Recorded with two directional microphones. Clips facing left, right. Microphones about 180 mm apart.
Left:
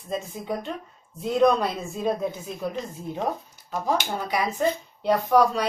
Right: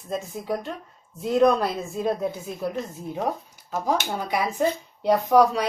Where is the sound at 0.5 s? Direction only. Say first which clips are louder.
Right 2 dB; centre (ahead or behind).